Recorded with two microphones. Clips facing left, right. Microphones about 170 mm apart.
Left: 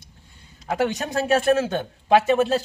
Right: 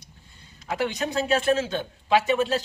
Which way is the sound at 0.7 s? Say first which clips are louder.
Left 3 dB; 45° left (ahead or behind).